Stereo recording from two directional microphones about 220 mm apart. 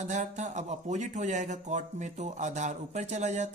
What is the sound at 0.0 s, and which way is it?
Speech, 35° right (ahead or behind).